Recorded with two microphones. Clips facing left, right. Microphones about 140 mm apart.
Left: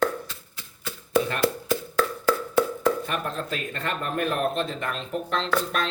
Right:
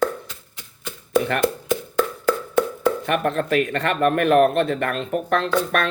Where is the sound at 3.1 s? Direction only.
65° right (ahead or behind).